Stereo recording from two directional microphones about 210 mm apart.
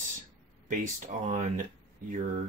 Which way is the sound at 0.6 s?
35° right (ahead or behind).